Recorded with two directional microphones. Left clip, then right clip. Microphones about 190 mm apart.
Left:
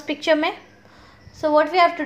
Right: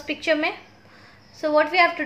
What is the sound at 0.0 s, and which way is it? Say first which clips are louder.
A woman's voice: left 3 dB; 20° left (ahead or behind).